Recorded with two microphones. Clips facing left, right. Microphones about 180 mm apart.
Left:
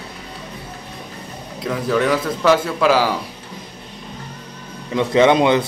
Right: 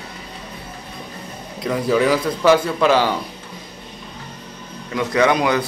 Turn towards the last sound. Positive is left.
turn(degrees=25)  # may be behind; listen again after turning